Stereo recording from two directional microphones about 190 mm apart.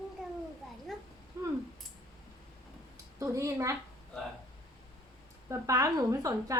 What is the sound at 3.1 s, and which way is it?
Speech, 15° right (ahead or behind).